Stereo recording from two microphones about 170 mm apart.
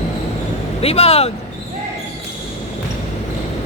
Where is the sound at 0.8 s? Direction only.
35° left (ahead or behind).